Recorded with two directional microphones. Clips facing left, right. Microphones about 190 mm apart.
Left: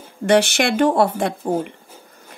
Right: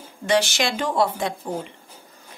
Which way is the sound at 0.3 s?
60° left (ahead or behind).